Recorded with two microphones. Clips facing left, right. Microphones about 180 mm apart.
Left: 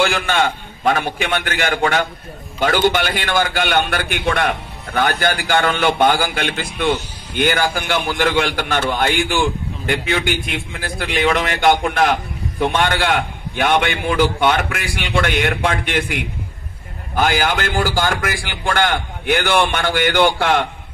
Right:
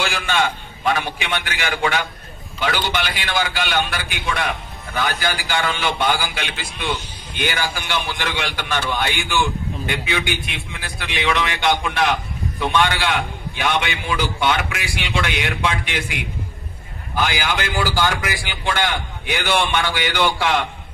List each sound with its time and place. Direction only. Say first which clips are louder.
0.0 s a man's voice: left 4 dB; 55° left (ahead or behind)